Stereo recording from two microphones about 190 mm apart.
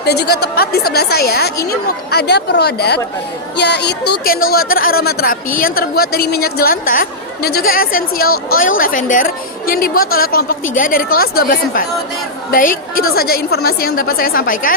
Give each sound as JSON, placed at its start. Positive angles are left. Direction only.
{"t": 0.0, "sound": "a woman's voice", "side_deg": 60}